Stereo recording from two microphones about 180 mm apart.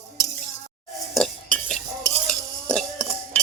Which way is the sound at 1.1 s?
Centre (ahead or behind).